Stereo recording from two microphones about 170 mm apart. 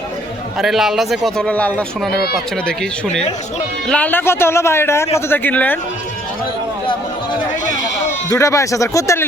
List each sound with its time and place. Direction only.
0.6 s a man's voice: centre (ahead or behind)
8.3 s speech: 20° left (ahead or behind)